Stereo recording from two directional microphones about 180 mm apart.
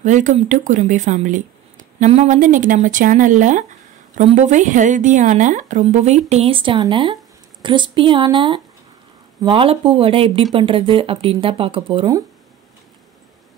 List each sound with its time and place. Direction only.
0.0 s a woman's voice: 45° right (ahead or behind); by 12.2 s 30° right (ahead or behind)